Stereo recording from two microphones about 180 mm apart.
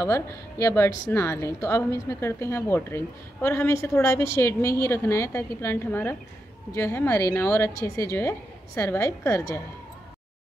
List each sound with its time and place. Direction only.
0.0 s a woman's voice: 15° left (ahead or behind)